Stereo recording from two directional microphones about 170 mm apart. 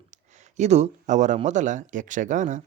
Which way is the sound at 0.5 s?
40° right (ahead or behind).